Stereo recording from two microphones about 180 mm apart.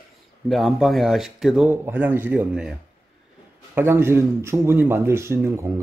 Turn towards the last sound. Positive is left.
turn(degrees=-15)  # may be behind; listen again after turning